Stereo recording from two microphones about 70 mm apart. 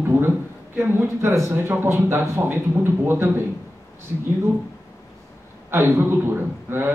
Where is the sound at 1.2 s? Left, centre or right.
Right.